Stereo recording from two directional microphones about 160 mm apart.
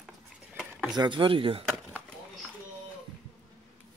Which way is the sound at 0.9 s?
30° right (ahead or behind).